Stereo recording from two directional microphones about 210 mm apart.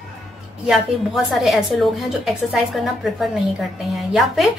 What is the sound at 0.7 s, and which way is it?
Speech, centre (ahead or behind).